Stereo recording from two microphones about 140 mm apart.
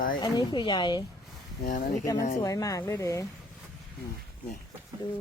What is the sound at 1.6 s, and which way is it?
Speech, 75° left (ahead or behind).